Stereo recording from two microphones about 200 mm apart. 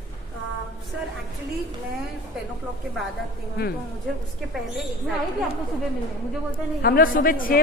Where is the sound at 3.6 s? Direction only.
50° left (ahead or behind).